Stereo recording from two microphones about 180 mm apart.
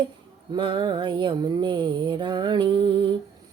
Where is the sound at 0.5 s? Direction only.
25° right (ahead or behind).